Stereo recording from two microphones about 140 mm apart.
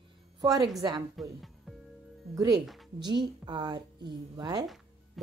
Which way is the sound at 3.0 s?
35° right (ahead or behind).